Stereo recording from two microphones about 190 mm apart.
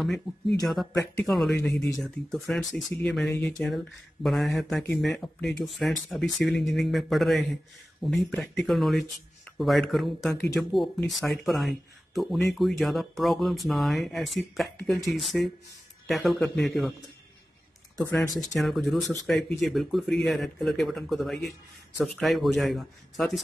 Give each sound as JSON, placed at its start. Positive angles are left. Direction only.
{"t": 0.0, "sound": "speech", "side_deg": 0}
{"t": 1.5, "sound": "speech", "side_deg": 15}
{"t": 2.0, "sound": "speech", "side_deg": 0}
{"t": 18.3, "sound": "speech", "side_deg": 0}